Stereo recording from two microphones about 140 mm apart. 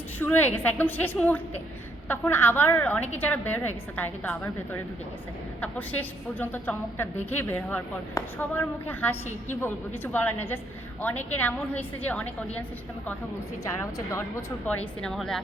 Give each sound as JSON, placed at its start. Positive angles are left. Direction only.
{"t": 0.2, "sound": "a woman's voice", "side_deg": 15}
{"t": 14.1, "sound": "speech", "side_deg": 20}
{"t": 14.8, "sound": "a woman's voice", "side_deg": 5}